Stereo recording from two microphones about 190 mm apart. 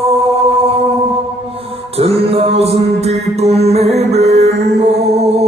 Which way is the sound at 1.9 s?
30° right (ahead or behind).